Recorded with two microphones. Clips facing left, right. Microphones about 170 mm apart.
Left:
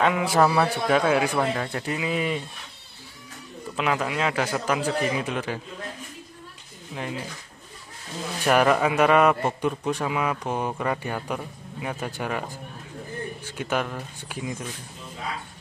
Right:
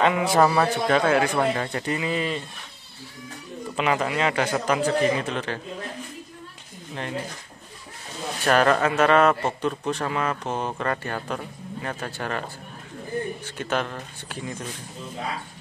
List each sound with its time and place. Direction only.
0.0 s a man's voice: centre (ahead or behind)
3.7 s a man's voice: centre (ahead or behind)
8.5 s speech: 10° left (ahead or behind)
13.6 s speech: 10° left (ahead or behind)